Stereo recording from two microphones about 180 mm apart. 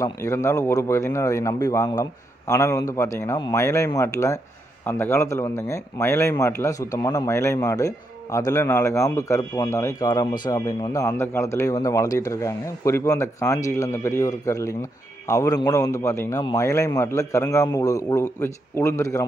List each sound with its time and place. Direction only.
0.0 s a man's voice: 15° left (ahead or behind)